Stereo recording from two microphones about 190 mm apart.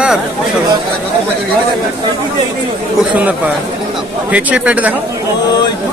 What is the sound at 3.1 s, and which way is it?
Speech, 10° right (ahead or behind).